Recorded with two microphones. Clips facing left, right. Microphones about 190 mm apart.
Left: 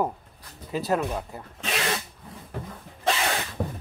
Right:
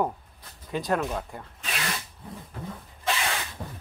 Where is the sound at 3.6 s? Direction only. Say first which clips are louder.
Left 9 dB; 55° left (ahead or behind).